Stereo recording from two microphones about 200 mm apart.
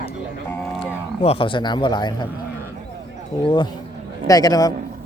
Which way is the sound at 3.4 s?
25° left (ahead or behind).